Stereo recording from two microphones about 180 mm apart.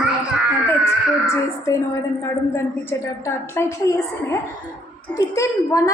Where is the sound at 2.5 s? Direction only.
15° left (ahead or behind).